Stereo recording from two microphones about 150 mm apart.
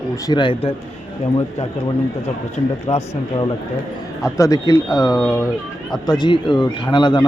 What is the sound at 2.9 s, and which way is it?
Speech, 45° left (ahead or behind).